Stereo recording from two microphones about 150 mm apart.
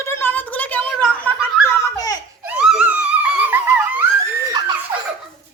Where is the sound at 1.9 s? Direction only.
25° left (ahead or behind).